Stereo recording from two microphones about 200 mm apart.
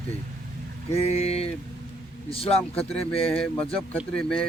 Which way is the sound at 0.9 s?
30° left (ahead or behind).